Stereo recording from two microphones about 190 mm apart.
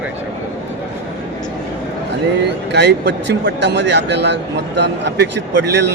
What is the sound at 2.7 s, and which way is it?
Speech, 65° right (ahead or behind).